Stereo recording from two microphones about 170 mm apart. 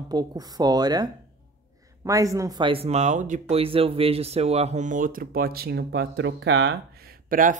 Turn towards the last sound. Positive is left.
turn(degrees=-55)  # may be behind; listen again after turning